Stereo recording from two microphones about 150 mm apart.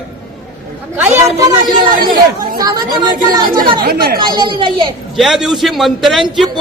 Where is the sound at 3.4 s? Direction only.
75° right (ahead or behind).